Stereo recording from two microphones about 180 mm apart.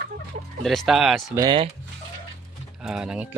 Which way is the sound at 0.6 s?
Centre (ahead or behind).